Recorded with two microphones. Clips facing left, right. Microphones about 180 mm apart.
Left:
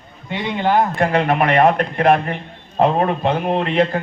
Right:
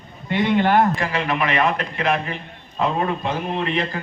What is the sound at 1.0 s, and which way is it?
Speech, 55° left (ahead or behind).